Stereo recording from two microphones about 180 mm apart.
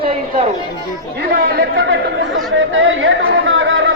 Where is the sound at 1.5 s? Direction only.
75° right (ahead or behind).